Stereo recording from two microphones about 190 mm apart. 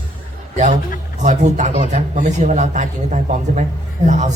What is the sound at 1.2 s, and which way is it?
A man's voice, 40° right (ahead or behind).